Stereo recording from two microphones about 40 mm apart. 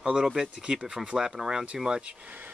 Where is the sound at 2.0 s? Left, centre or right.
Right.